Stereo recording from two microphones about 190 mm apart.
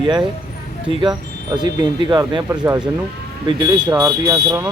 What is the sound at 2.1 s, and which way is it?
Speech, 20° right (ahead or behind).